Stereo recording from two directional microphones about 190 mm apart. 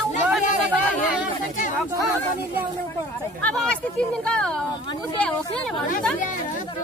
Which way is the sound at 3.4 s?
5° left (ahead or behind).